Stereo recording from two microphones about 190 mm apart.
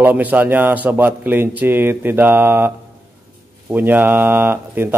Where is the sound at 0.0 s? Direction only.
10° right (ahead or behind).